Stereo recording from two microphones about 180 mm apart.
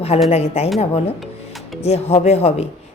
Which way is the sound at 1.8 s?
35° left (ahead or behind).